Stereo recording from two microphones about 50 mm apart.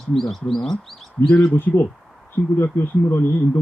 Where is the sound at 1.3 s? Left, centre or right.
Left.